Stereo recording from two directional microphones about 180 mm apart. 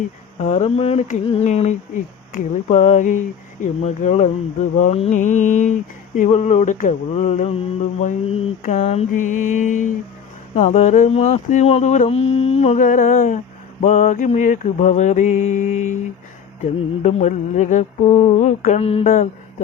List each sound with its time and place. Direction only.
0.4 s mantra: 35° left (ahead or behind)
2.3 s speech: 45° left (ahead or behind)
6.1 s mantra: 40° left (ahead or behind)
8.7 s speech: 35° left (ahead or behind)
10.5 s mantra: 40° left (ahead or behind)
17.0 s mantra: 40° left (ahead or behind)
19.0 s speech: 45° left (ahead or behind)